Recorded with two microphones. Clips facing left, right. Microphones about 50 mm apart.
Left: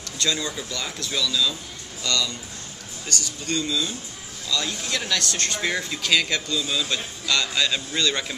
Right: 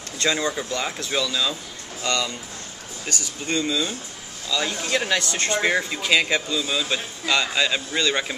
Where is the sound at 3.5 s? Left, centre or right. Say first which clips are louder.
Right 2 dB; right.